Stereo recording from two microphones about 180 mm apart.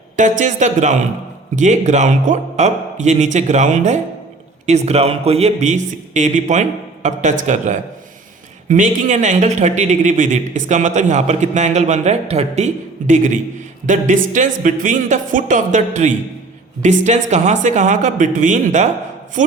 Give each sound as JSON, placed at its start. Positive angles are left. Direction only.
{"t": 0.2, "sound": "a man's voice", "side_deg": -45}